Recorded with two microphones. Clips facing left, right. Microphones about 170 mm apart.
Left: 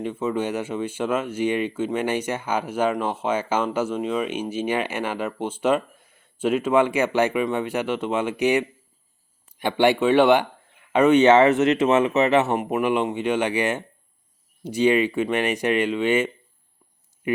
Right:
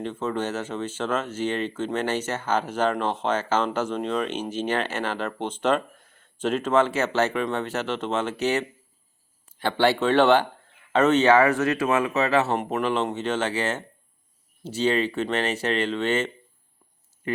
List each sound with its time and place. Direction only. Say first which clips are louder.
0.0 s speech: left 3 dB; 10° left (ahead or behind)